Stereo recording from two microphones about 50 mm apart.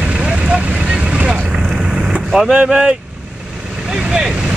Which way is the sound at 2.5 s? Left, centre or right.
Right.